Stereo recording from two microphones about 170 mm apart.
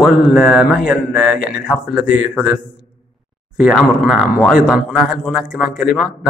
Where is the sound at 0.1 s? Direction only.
65° left (ahead or behind).